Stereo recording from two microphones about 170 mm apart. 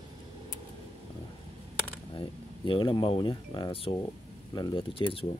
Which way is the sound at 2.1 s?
30° left (ahead or behind).